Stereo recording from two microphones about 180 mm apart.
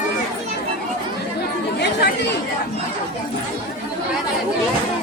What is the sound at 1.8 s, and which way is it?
Chatter, 70° left (ahead or behind).